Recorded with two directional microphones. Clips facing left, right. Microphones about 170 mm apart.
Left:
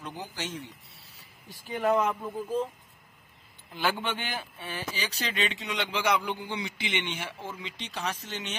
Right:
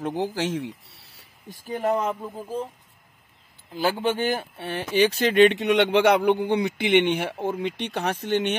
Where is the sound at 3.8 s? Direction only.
35° right (ahead or behind).